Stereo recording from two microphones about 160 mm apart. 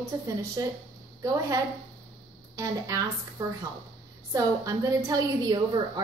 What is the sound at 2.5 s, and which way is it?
Speech, 20° right (ahead or behind).